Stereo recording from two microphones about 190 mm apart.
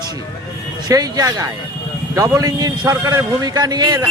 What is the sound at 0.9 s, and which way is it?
Speech, 20° right (ahead or behind).